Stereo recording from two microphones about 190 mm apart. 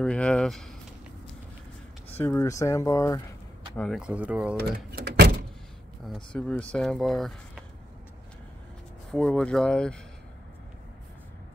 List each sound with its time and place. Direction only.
0.0 s speech: 5° left (ahead or behind)
2.1 s speech: 10° left (ahead or behind)
3.7 s speech: 5° left (ahead or behind)
4.0 s speech: 5° right (ahead or behind)
4.6 s speech: 60° right (ahead or behind)
6.0 s speech: 5° left (ahead or behind)
9.1 s speech: 5° left (ahead or behind)